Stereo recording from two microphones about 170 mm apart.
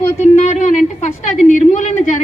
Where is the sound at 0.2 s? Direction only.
45° left (ahead or behind).